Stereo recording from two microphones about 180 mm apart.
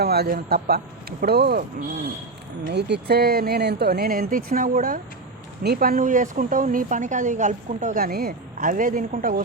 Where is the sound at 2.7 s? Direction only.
65° right (ahead or behind).